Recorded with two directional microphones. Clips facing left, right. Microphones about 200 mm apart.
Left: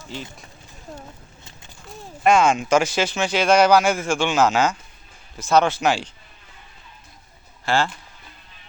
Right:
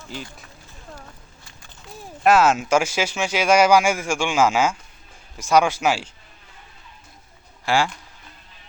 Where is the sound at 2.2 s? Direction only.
5° right (ahead or behind).